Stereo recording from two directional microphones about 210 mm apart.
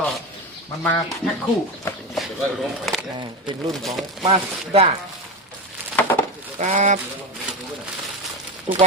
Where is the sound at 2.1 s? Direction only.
Centre (ahead or behind).